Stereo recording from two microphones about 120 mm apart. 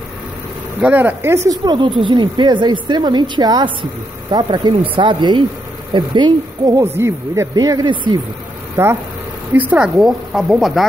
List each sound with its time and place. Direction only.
0.7 s speech: 15° right (ahead or behind)
1.6 s speech: 40° right (ahead or behind)
6.8 s speech: 20° right (ahead or behind)
7.5 s speech: 35° right (ahead or behind)
9.5 s speech: 15° right (ahead or behind)
9.9 s speech: centre (ahead or behind)